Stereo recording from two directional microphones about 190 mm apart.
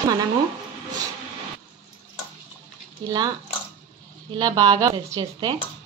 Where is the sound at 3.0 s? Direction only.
20° right (ahead or behind).